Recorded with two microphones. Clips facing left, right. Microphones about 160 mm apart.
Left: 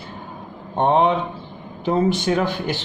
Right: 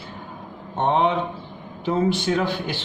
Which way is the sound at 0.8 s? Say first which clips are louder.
Left 3 dB; 40° left (ahead or behind).